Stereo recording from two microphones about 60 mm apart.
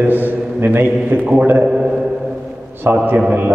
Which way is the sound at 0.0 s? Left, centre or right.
Right.